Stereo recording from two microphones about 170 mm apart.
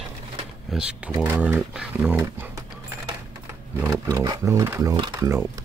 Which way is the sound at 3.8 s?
20° right (ahead or behind).